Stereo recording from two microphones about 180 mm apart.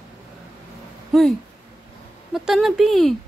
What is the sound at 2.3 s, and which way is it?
Speech, centre (ahead or behind).